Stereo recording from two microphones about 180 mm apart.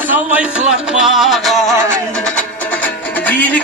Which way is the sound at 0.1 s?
10° right (ahead or behind).